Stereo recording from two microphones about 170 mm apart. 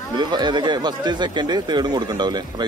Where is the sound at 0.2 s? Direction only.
25° right (ahead or behind).